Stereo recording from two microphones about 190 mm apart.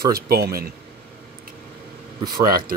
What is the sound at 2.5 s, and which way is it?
Speech, 50° right (ahead or behind).